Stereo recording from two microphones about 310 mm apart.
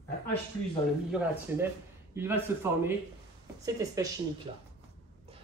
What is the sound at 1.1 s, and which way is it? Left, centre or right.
Speech, centre.